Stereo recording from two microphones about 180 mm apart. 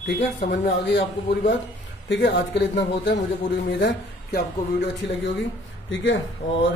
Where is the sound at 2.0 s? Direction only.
75° left (ahead or behind).